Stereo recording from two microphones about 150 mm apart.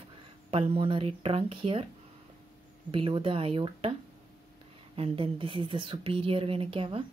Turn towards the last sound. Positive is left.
turn(degrees=-40)  # may be behind; listen again after turning